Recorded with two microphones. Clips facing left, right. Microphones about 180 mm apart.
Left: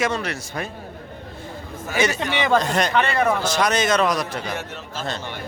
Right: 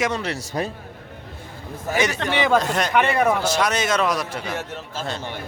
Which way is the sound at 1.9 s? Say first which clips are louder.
Left 1 dB; 15° right (ahead or behind).